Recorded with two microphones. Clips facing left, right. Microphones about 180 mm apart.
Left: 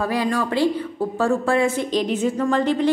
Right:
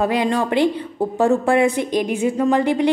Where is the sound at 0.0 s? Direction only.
20° right (ahead or behind).